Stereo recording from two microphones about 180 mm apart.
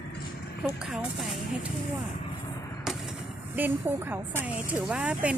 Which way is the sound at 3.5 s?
10° right (ahead or behind).